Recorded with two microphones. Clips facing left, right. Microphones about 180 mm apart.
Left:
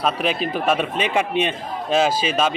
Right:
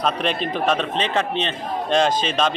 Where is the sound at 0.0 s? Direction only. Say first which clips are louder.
Left 1 dB; 5° left (ahead or behind).